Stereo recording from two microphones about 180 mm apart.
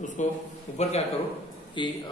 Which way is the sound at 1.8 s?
25° left (ahead or behind).